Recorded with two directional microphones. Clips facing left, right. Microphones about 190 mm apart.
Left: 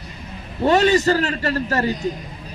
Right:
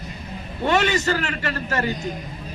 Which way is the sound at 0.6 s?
35° left (ahead or behind).